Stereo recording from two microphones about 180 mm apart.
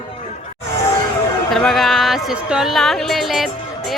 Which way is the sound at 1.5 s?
Centre (ahead or behind).